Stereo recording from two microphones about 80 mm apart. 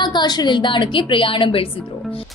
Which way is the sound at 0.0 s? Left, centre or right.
Left.